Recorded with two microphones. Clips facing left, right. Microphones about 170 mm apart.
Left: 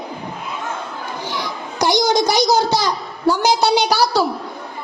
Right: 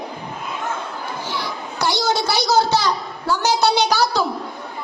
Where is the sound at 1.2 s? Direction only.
15° left (ahead or behind).